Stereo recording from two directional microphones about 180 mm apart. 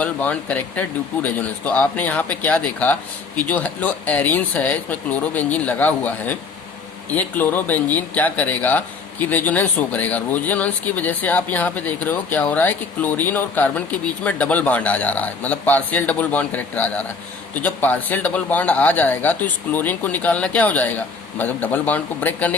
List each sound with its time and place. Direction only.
0.0 s speech: 5° left (ahead or behind)